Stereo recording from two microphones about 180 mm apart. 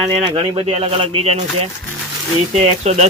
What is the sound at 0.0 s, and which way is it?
Speech, 30° right (ahead or behind).